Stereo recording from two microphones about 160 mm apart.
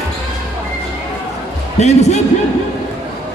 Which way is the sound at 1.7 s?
45° left (ahead or behind).